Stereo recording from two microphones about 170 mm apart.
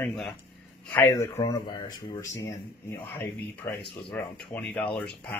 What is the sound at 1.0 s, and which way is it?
Speech, 15° left (ahead or behind).